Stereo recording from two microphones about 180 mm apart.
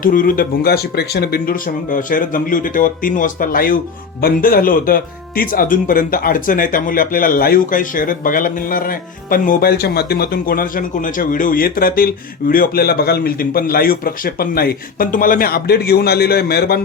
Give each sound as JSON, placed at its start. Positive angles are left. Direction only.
{"t": 0.0, "sound": "speech", "side_deg": 50}